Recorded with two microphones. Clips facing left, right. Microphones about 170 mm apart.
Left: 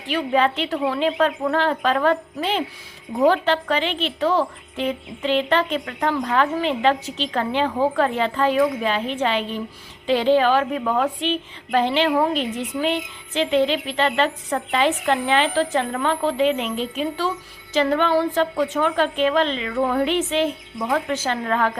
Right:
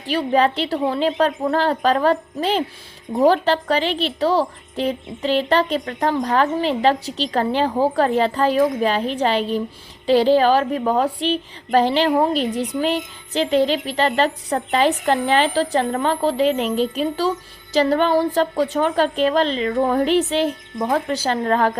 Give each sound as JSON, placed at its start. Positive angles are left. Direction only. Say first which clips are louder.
{"t": 0.1, "sound": "a woman's voice", "louder": "right 2 dB", "side_deg": -35}